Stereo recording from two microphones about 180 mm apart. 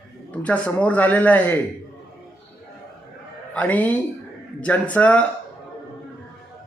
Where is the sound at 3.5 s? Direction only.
10° left (ahead or behind).